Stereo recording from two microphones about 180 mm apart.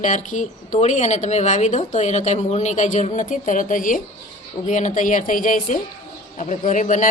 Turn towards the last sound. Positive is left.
turn(degrees=45)  # may be behind; listen again after turning